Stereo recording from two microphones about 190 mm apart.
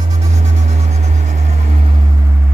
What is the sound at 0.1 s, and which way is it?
Vehicle, 35° right (ahead or behind).